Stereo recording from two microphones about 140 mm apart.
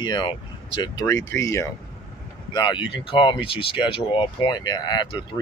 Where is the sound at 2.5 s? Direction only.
35° left (ahead or behind).